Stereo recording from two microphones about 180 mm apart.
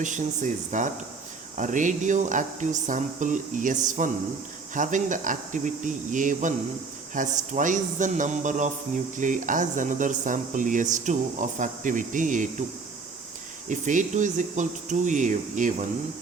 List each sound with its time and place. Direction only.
0.0 s speech: 45° right (ahead or behind)
13.7 s speech: 45° right (ahead or behind)